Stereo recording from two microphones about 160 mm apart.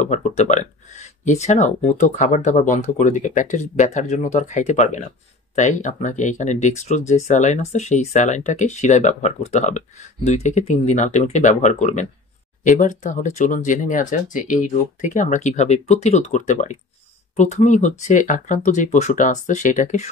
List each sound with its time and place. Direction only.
0.0 s speech: 45° left (ahead or behind)